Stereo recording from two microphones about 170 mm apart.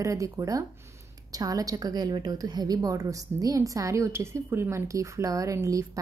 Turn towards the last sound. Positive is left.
turn(degrees=-20)  # may be behind; listen again after turning